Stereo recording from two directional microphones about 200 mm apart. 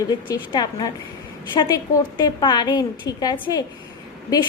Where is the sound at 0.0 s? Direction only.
20° left (ahead or behind).